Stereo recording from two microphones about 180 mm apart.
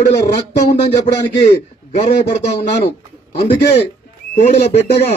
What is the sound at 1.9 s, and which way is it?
A man's voice, 40° left (ahead or behind).